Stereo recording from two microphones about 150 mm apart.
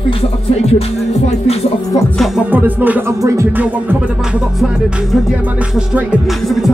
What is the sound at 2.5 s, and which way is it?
Music, 10° right (ahead or behind).